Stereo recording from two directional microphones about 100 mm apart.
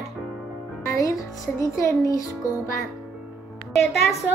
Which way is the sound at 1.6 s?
30° left (ahead or behind).